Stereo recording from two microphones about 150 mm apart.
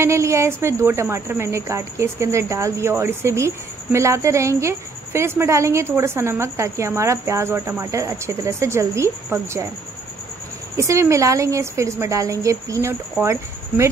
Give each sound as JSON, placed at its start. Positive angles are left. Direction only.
{"t": 0.0, "sound": "speech", "side_deg": -20}
{"t": 10.8, "sound": "speech", "side_deg": -20}